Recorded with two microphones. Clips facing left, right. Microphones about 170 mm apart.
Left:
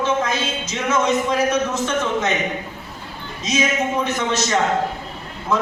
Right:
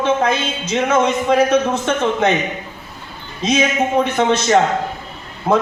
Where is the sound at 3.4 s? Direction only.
60° right (ahead or behind).